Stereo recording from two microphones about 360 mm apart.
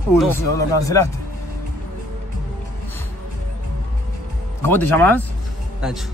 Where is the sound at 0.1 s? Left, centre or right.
Centre.